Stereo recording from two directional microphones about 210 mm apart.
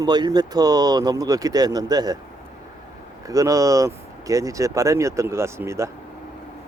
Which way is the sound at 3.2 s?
15° right (ahead or behind).